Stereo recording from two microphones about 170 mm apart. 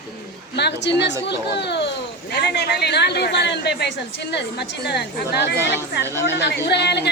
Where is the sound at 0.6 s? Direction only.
85° left.